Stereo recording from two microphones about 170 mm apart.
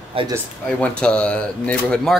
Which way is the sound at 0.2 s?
35° right (ahead or behind).